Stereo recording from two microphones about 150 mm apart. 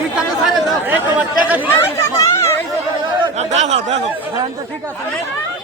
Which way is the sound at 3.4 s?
50° right (ahead or behind).